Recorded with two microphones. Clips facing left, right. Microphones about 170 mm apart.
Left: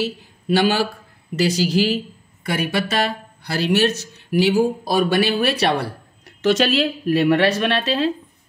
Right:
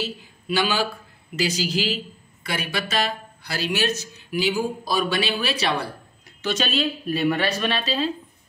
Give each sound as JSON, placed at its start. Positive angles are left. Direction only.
{"t": 0.0, "sound": "speech", "side_deg": 60}